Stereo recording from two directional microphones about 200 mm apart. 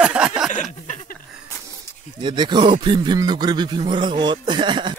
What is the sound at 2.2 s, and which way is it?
A man's voice, 20° right (ahead or behind).